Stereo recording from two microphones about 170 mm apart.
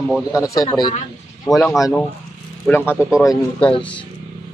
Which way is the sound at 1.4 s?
Centre (ahead or behind).